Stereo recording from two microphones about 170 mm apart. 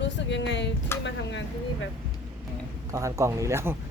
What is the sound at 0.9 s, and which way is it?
Speech, 15° left (ahead or behind).